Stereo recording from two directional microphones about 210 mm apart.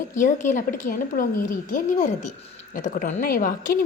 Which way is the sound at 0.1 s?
35° left (ahead or behind).